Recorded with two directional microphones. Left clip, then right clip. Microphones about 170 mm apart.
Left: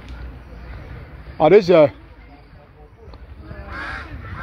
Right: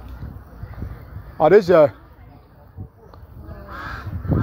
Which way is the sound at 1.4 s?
Centre (ahead or behind).